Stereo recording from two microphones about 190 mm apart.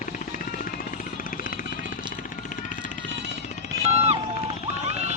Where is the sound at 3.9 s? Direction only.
35° right (ahead or behind).